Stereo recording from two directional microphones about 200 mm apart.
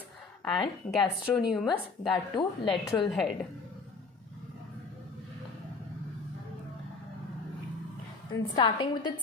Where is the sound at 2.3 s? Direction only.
25° left (ahead or behind).